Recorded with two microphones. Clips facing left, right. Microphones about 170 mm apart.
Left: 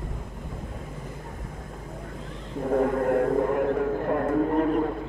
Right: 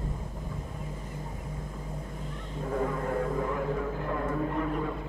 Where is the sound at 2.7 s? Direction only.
60° left (ahead or behind).